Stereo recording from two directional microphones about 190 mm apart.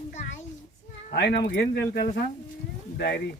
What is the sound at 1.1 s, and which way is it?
Speech, 60° left (ahead or behind).